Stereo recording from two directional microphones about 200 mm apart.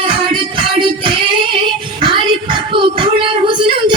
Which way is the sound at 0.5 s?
25° right (ahead or behind).